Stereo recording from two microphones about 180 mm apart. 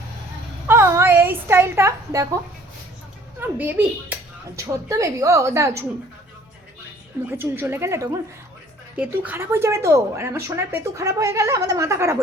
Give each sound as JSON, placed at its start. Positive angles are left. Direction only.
{"t": 0.7, "sound": "a sound", "side_deg": -15}
{"t": 3.4, "sound": "a woman's voice", "side_deg": -10}
{"t": 7.3, "sound": "a woman's voice", "side_deg": -10}